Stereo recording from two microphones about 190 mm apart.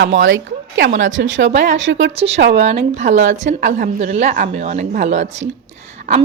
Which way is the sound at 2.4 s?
65° right (ahead or behind).